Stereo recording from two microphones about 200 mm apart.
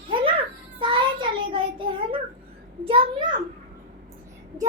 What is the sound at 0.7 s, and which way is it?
Child singing, 25° right (ahead or behind).